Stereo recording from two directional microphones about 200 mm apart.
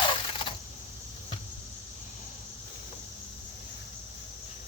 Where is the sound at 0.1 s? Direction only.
25° left (ahead or behind).